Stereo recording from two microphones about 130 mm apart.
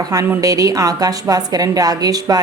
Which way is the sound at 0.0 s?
25° right (ahead or behind).